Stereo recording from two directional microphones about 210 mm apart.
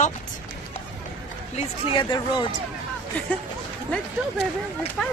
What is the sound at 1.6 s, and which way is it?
Speech, 25° left (ahead or behind).